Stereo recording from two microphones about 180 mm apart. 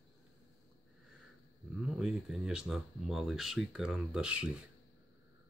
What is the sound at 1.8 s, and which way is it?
Speech, 5° right (ahead or behind).